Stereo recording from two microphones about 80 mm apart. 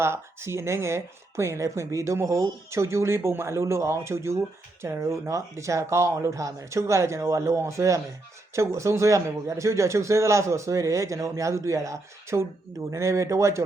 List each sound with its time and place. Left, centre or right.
0.0 s speech: right